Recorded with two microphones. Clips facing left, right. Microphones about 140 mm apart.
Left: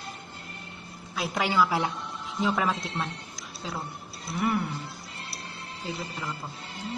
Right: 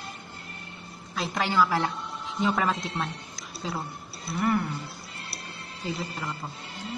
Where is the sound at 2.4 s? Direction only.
Centre (ahead or behind).